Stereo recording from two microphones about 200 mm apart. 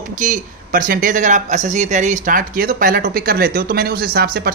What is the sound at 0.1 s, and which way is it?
Speech, 40° right (ahead or behind).